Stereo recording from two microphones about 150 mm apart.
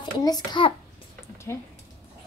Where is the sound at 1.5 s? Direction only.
20° left (ahead or behind).